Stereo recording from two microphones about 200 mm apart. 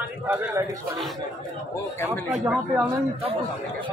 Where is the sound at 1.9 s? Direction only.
10° left (ahead or behind).